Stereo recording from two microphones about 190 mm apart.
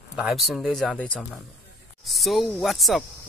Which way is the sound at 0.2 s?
5° right (ahead or behind).